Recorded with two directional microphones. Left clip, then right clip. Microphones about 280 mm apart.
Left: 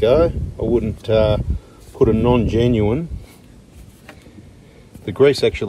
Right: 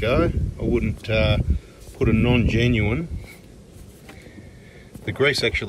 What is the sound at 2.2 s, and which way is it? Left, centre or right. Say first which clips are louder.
Speech: left 5 dB; left.